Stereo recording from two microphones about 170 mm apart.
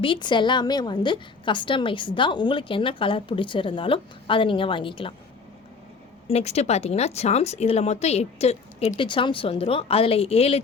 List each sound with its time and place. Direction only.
0.0 s a woman's voice: 30° left (ahead or behind)
6.2 s speech: 40° left (ahead or behind)